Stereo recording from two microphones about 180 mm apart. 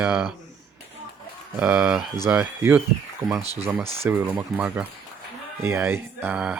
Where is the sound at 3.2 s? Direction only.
20° right (ahead or behind).